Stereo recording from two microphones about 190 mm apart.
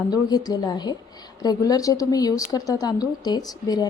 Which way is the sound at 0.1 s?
20° left (ahead or behind).